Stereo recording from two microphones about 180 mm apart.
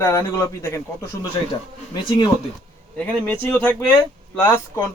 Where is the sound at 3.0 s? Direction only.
10° left (ahead or behind).